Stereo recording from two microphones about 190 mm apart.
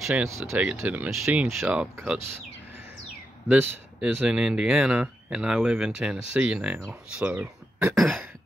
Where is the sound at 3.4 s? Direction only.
5° right (ahead or behind).